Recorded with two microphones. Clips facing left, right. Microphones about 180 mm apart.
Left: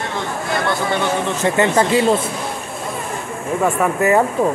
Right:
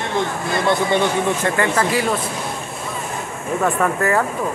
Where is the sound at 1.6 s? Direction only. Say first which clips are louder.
Left 4 dB; 25° left (ahead or behind).